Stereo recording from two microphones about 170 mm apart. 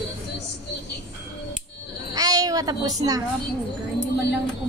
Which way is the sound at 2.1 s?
20° right (ahead or behind).